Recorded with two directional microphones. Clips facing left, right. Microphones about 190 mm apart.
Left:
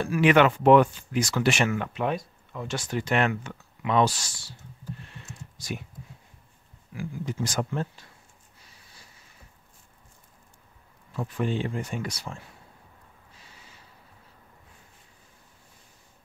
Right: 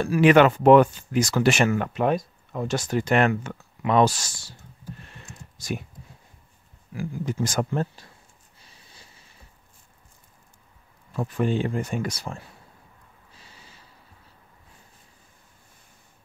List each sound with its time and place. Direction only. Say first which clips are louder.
0.1 s speech: right 4 dB; 40° right (ahead or behind)
5.6 s speech: right 4 dB; 45° right (ahead or behind)
7.0 s speech: right 4 dB; 50° right (ahead or behind)
11.1 s speech: right 4 dB; 45° right (ahead or behind)